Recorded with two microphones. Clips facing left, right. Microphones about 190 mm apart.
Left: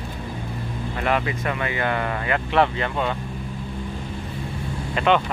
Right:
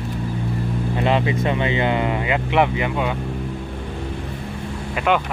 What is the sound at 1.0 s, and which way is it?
Speech, 20° right (ahead or behind).